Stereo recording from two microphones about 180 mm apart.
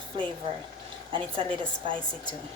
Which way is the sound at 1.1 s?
30° right (ahead or behind).